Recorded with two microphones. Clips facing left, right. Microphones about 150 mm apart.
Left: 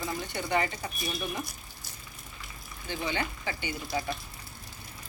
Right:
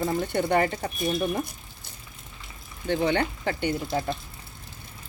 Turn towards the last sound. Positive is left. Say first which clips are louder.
# right 7 dB
turn(degrees=-55)  # may be behind; listen again after turning